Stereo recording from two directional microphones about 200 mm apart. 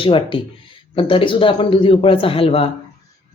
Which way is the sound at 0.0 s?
25° left (ahead or behind).